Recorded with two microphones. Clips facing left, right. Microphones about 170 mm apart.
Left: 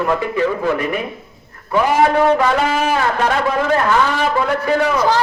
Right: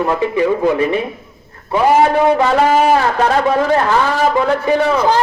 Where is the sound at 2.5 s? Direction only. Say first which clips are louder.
Right 5 dB; 40° right (ahead or behind).